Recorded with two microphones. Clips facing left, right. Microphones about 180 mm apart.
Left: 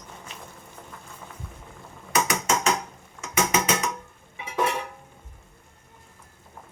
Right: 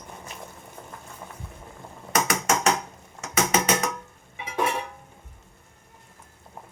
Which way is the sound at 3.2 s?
45° right (ahead or behind).